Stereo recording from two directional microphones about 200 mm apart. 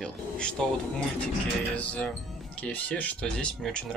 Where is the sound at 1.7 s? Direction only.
5° left (ahead or behind).